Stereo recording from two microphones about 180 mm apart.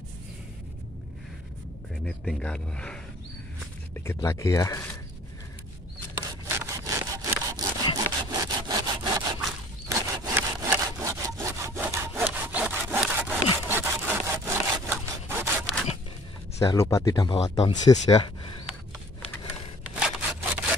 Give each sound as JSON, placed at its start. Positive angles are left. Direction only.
{"t": 2.0, "sound": "speech", "side_deg": 5}
{"t": 4.0, "sound": "speech", "side_deg": 15}
{"t": 6.5, "sound": "sawing", "side_deg": -15}
{"t": 16.5, "sound": "speech", "side_deg": 15}
{"t": 20.0, "sound": "sawing", "side_deg": -10}